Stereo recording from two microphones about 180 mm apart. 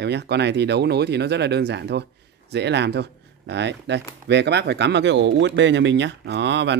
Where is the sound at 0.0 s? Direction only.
70° right (ahead or behind).